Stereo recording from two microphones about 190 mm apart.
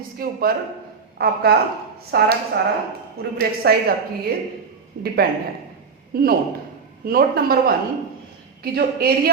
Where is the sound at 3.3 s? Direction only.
55° right (ahead or behind).